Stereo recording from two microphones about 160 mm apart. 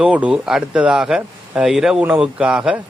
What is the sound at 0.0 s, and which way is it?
Speech, 5° right (ahead or behind).